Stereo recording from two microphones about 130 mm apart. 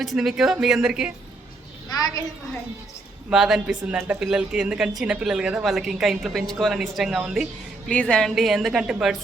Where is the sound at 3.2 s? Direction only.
5° right (ahead or behind).